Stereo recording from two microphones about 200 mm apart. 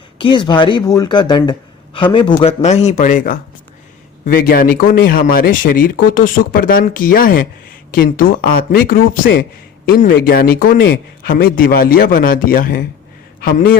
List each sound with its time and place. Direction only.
0.2 s speech: 25° left (ahead or behind); by 13.7 s 45° left (ahead or behind)